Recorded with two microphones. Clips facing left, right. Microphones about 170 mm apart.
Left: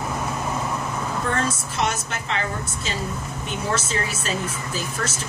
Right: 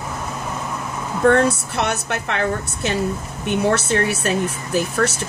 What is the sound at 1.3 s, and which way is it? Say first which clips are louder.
Speech: right 8 dB; 65° right (ahead or behind).